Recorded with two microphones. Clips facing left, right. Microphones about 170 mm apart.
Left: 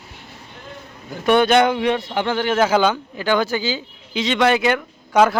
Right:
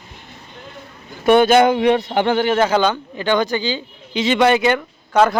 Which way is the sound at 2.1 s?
45° right (ahead or behind).